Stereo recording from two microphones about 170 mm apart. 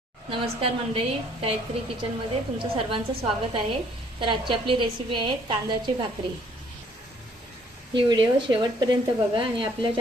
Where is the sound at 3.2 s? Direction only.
35° right (ahead or behind).